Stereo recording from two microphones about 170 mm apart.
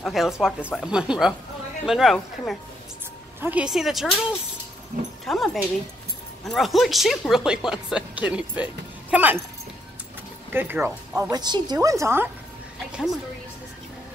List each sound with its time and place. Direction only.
0.0 s speech: centre (ahead or behind)
5.2 s speech: centre (ahead or behind)
10.5 s a woman's voice: 10° right (ahead or behind)
12.9 s speech: centre (ahead or behind)